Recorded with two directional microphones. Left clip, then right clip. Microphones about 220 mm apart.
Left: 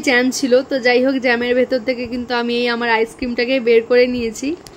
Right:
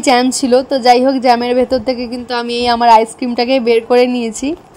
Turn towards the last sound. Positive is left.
turn(degrees=-25)  # may be behind; listen again after turning